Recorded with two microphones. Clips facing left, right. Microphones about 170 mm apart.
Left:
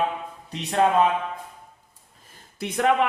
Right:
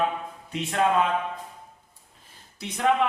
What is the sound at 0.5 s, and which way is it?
Speech, 35° left (ahead or behind).